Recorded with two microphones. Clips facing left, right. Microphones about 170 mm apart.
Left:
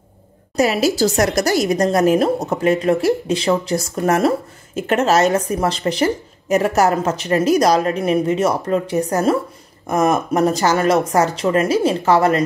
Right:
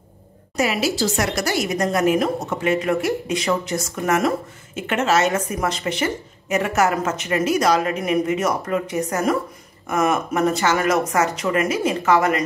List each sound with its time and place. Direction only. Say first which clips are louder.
0.6 s a woman's voice: left 5 dB; 40° left (ahead or behind)